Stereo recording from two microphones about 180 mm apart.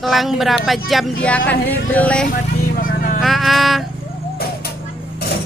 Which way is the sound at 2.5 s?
50° left (ahead or behind).